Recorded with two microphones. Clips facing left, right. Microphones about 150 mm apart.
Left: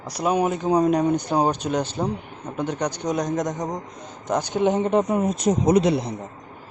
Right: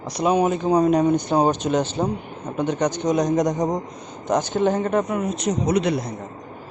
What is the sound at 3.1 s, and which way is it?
Speech, 15° right (ahead or behind).